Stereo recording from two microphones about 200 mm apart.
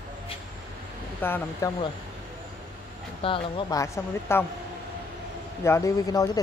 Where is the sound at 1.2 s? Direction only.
10° left (ahead or behind).